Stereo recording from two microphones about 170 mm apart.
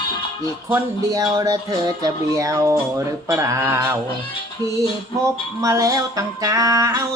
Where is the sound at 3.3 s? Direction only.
20° right (ahead or behind).